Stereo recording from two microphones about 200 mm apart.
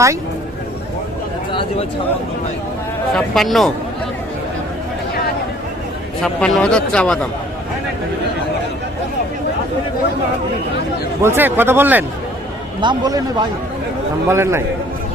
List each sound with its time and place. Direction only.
3.1 s speech: centre (ahead or behind)
6.2 s speech: 5° left (ahead or behind)
11.2 s speech: 10° right (ahead or behind)
12.8 s a man's voice: 20° right (ahead or behind)
14.3 s speech: 15° right (ahead or behind)